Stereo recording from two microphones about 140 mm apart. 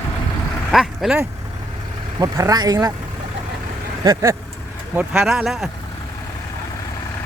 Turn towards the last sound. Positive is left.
turn(degrees=0)  # may be behind; listen again after turning